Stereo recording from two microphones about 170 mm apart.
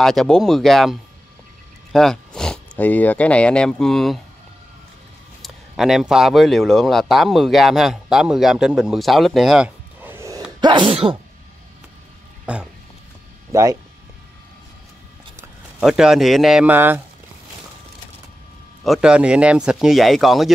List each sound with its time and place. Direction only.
0.0 s speech: centre (ahead or behind)
5.4 s speech: centre (ahead or behind)
10.1 s gasp: 15° right (ahead or behind)
10.6 s speech: 30° right (ahead or behind)
12.5 s speech: 5° right (ahead or behind)
13.5 s speech: 20° right (ahead or behind)
15.8 s speech: 5° right (ahead or behind)
18.9 s speech: 5° right (ahead or behind)